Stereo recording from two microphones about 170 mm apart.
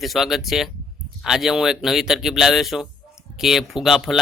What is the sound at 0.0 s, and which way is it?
Speech, centre (ahead or behind).